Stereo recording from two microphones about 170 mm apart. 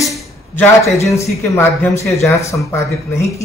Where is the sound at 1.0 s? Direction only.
20° left (ahead or behind).